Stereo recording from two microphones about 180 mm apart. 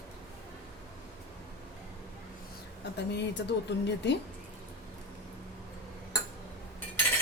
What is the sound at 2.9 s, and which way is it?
Speech, 75° left (ahead or behind).